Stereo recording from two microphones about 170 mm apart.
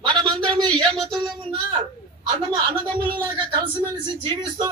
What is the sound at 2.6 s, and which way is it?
A man's voice, 30° right (ahead or behind).